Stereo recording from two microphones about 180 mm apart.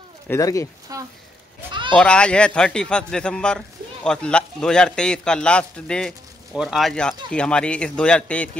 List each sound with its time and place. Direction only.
0.3 s speech: 20° left (ahead or behind)
0.9 s a sound: 20° right (ahead or behind)
2.0 s a man's voice: 5° left (ahead or behind)